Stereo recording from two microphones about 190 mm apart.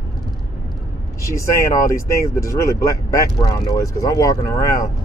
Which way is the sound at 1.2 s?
15° left (ahead or behind).